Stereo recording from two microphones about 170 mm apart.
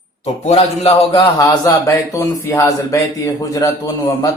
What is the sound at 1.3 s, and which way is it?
Speech, 20° left (ahead or behind).